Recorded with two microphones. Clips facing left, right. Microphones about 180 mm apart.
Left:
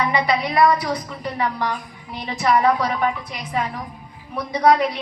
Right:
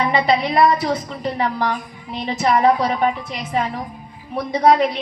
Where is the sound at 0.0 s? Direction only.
25° right (ahead or behind).